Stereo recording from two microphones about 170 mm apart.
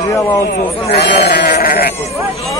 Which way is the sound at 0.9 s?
85° left.